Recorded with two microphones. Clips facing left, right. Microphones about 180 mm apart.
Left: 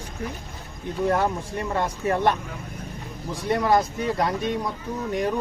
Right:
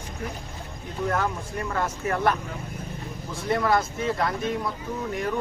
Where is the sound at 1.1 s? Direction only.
30° left (ahead or behind).